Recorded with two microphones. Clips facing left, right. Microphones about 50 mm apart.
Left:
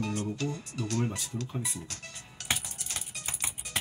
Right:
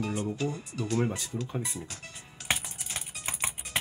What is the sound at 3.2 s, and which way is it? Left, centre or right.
Music, right.